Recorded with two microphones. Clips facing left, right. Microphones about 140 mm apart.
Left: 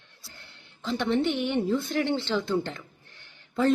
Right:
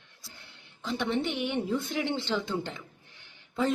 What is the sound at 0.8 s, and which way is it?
A woman's voice, 10° right (ahead or behind).